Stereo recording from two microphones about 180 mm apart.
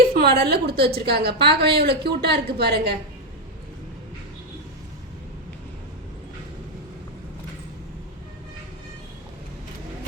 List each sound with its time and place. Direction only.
0.1 s a woman's voice: 55° right (ahead or behind)